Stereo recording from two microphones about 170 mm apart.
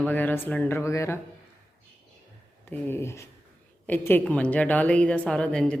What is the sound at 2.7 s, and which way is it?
A woman's voice, 15° left (ahead or behind).